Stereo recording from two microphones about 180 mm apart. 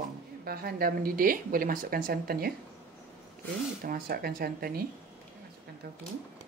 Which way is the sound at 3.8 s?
55° right (ahead or behind).